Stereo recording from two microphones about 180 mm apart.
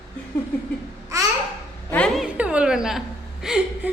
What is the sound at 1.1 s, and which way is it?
Babbling, 15° right (ahead or behind).